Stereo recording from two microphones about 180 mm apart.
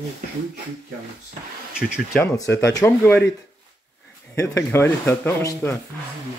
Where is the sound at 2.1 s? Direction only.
15° left (ahead or behind).